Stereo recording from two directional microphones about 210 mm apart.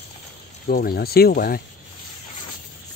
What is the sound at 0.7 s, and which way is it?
Speech, 45° left (ahead or behind).